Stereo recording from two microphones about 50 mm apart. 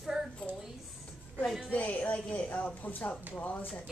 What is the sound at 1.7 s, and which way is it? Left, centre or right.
Speech, left.